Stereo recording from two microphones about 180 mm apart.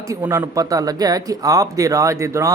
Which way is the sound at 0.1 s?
15° right (ahead or behind).